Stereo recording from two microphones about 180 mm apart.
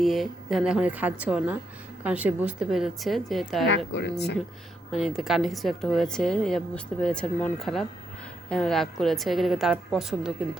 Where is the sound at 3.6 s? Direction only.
75° left (ahead or behind).